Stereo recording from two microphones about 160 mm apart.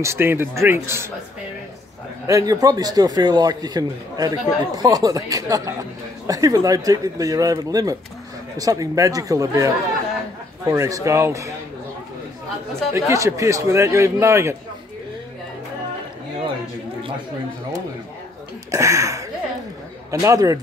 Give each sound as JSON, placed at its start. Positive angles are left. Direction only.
{"t": 0.0, "sound": "speech", "side_deg": -15}
{"t": 2.2, "sound": "speech", "side_deg": -20}
{"t": 12.9, "sound": "speech", "side_deg": -20}
{"t": 18.7, "sound": "speech", "side_deg": -20}